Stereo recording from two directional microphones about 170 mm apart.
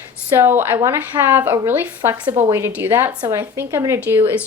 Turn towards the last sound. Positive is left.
turn(degrees=-15)  # may be behind; listen again after turning